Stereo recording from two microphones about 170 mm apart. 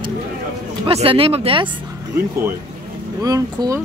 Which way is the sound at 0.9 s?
35° right (ahead or behind).